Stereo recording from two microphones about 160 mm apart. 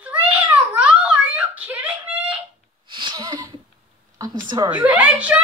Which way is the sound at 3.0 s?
25° right (ahead or behind).